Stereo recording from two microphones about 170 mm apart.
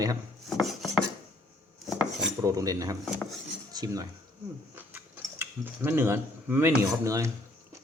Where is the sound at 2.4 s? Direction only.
20° right (ahead or behind).